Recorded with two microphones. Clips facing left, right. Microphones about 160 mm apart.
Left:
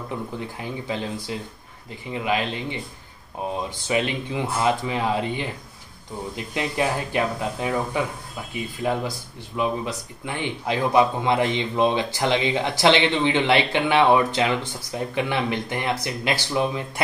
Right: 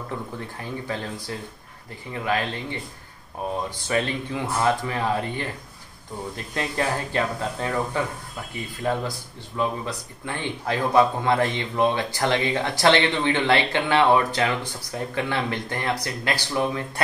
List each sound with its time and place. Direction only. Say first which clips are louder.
0.4 s speech: left 1 dB; 15° left (ahead or behind)
3.9 s speech: left 1 dB; 15° left (ahead or behind)